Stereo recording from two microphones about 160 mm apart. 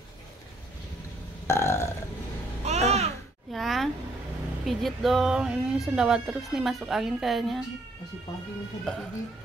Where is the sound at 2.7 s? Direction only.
40° right (ahead or behind).